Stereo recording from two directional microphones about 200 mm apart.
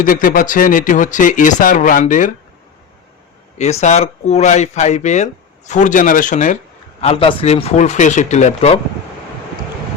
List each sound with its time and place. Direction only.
0.0 s speech: 45° left (ahead or behind)
3.6 s speech: 35° left (ahead or behind)
7.0 s speech: 30° left (ahead or behind)